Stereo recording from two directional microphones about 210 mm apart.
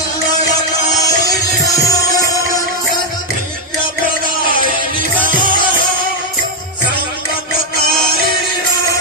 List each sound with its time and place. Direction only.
1.9 s music: 15° left (ahead or behind)